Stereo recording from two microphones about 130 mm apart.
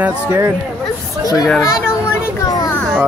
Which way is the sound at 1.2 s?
25° left (ahead or behind).